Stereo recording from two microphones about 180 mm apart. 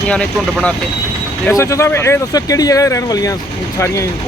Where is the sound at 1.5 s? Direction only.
15° left (ahead or behind).